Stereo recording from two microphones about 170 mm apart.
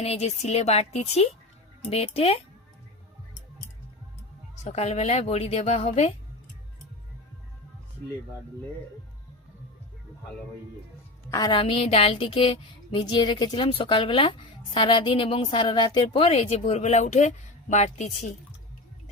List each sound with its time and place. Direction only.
0.0 s a woman's voice: 40° left (ahead or behind)
4.5 s a woman's voice: 40° left (ahead or behind)
11.3 s a woman's voice: 20° left (ahead or behind); by 18.3 s 45° left (ahead or behind)